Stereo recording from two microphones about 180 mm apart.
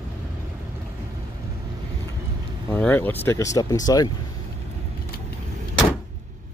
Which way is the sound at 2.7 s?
10° left (ahead or behind).